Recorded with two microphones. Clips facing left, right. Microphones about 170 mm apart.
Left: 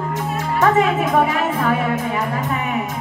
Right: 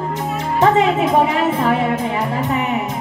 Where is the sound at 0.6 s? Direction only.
25° right (ahead or behind).